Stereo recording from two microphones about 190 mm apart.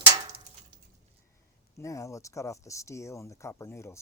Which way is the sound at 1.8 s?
15° left (ahead or behind).